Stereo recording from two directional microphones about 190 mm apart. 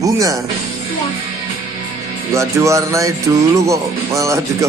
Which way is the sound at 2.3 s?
15° right (ahead or behind).